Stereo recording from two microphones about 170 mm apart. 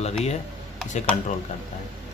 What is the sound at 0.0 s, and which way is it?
Speech, 40° left (ahead or behind).